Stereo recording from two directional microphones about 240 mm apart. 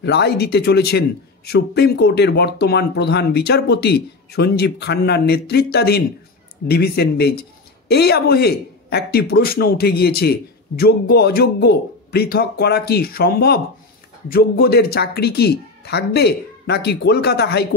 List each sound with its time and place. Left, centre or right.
0.0 s a man's voice: left